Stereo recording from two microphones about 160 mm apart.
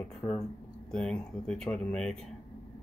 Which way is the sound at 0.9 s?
5° left (ahead or behind).